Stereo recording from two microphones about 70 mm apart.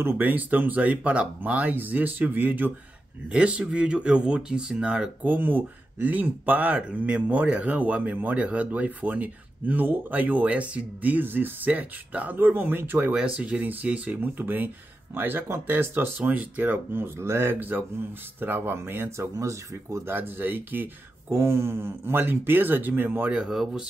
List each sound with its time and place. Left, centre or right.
0.0 s speech: right
3.3 s speech: centre
13.1 s speech: centre; by 20.0 s right
20.1 s speech: right
23.4 s speech: centre